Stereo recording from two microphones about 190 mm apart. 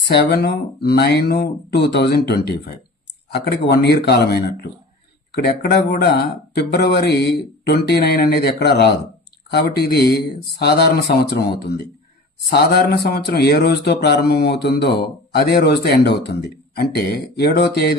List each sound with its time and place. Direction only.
0.1 s speech: 60° left (ahead or behind)
12.5 s speech: 55° left (ahead or behind)